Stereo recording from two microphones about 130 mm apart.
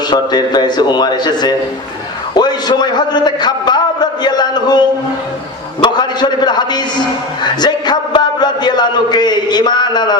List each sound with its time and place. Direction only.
0.1 s a man's voice: 35° left (ahead or behind)
5.8 s a man's voice: 35° left (ahead or behind)